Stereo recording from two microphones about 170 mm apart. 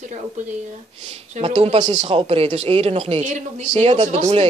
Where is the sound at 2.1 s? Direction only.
35° right (ahead or behind).